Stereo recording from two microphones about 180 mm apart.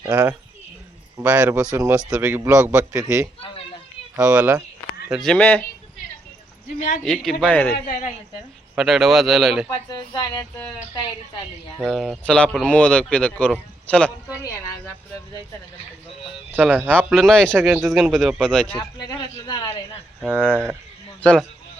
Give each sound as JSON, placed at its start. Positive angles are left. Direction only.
{"t": 0.0, "sound": "a man's voice", "side_deg": -15}
{"t": 6.7, "sound": "a woman's voice", "side_deg": 40}
{"t": 7.0, "sound": "speech", "side_deg": 0}
{"t": 8.7, "sound": "speech", "side_deg": 0}
{"t": 9.6, "sound": "speech", "side_deg": 20}
{"t": 11.9, "sound": "speech", "side_deg": 0}
{"t": 16.6, "sound": "a man's voice", "side_deg": -10}
{"t": 17.6, "sound": "a man's voice", "side_deg": -15}
{"t": 17.8, "sound": "speech", "side_deg": 0}
{"t": 18.8, "sound": "a sound", "side_deg": 20}
{"t": 20.2, "sound": "a man's voice", "side_deg": -5}
{"t": 21.2, "sound": "a man's voice", "side_deg": 5}